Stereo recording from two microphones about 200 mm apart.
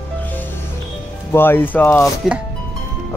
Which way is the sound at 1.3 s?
10° left (ahead or behind).